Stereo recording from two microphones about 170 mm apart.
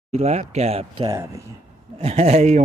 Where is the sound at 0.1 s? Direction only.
40° right (ahead or behind).